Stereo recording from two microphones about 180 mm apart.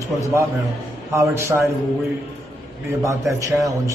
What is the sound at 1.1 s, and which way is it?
Speech, 15° right (ahead or behind).